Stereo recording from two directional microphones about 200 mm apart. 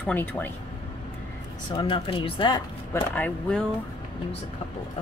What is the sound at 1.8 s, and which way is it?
Speech, 25° left (ahead or behind).